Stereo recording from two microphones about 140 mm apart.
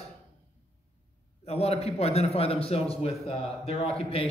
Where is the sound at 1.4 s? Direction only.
45° left (ahead or behind).